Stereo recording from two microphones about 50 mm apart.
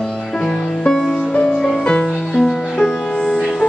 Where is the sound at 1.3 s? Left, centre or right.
Centre.